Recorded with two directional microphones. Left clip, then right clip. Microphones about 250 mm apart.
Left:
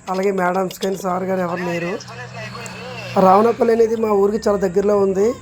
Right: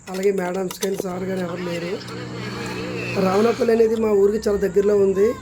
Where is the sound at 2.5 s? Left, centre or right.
Right.